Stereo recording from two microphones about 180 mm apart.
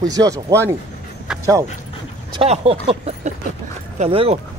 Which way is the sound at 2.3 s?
30° right (ahead or behind).